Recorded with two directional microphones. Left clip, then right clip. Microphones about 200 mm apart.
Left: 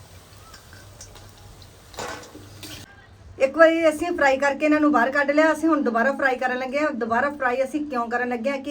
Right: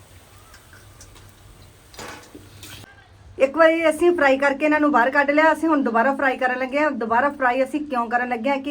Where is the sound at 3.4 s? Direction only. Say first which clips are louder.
Even; 30° right (ahead or behind).